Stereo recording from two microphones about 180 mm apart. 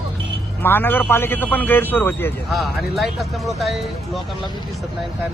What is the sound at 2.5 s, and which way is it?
Speech, centre (ahead or behind).